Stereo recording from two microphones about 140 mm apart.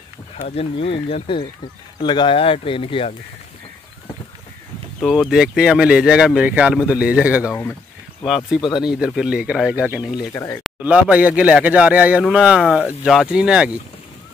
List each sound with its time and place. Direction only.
0.4 s speech: 45° left (ahead or behind)
5.0 s speech: centre (ahead or behind)
8.5 s speech: 35° left (ahead or behind)
8.8 s speech: 5° right (ahead or behind)
10.3 s speech: 20° left (ahead or behind)
10.8 s speech: 10° right (ahead or behind)